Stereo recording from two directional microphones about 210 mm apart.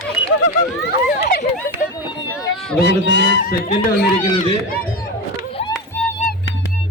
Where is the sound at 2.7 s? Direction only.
50° left (ahead or behind).